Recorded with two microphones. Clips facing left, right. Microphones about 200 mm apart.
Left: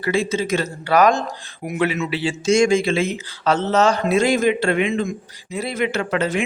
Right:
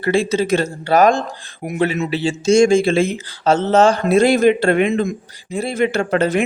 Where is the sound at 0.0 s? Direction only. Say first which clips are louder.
Right 4 dB; 30° right (ahead or behind).